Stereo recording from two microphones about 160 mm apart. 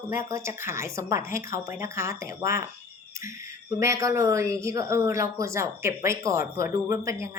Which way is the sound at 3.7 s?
20° right (ahead or behind).